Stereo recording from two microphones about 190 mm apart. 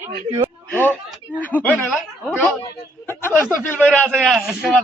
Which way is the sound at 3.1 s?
10° left (ahead or behind).